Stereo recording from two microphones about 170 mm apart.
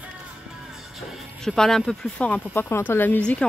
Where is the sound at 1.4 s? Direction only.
5° left (ahead or behind).